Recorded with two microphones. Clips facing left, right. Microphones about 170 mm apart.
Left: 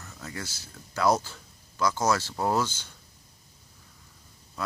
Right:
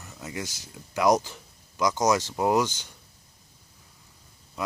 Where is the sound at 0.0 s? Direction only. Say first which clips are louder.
Right 3 dB; 20° right (ahead or behind).